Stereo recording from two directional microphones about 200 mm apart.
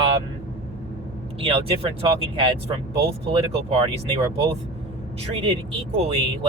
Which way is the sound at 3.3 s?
25° right (ahead or behind).